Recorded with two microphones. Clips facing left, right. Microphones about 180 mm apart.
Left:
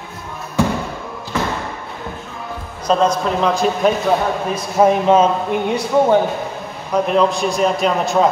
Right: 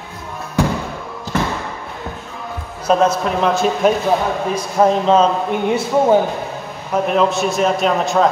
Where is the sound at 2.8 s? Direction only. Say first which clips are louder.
Right 1 dB; 5° right (ahead or behind).